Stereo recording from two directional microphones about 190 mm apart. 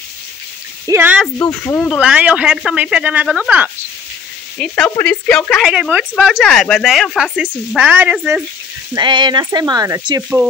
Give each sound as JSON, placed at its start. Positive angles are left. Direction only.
{"t": 0.8, "sound": "speech", "side_deg": -10}
{"t": 1.6, "sound": "speech", "side_deg": 15}
{"t": 1.9, "sound": "speech", "side_deg": -5}
{"t": 4.6, "sound": "speech", "side_deg": 5}
{"t": 8.9, "sound": "speech", "side_deg": -25}